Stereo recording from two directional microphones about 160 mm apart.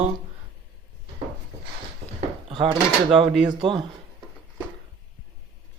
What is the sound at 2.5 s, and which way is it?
Drawer open or close, 30° right (ahead or behind).